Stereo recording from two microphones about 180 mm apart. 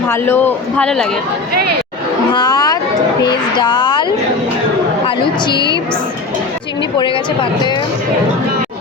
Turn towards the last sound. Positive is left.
turn(degrees=25)  # may be behind; listen again after turning